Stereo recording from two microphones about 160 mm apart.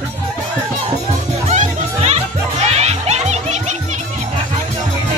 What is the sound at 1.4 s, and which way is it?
Music, 45° right (ahead or behind).